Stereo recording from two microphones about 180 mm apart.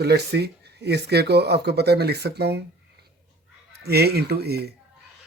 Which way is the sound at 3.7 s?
60° right (ahead or behind).